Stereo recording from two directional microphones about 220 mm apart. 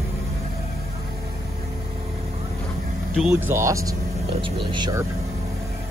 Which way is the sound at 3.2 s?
5° right (ahead or behind).